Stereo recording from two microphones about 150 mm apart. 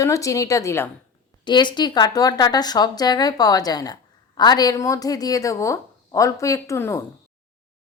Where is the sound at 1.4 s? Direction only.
30° left (ahead or behind).